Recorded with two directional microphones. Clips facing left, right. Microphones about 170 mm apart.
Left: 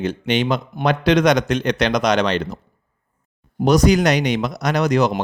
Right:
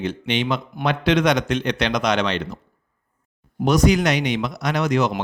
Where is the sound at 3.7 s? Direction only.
40° left (ahead or behind).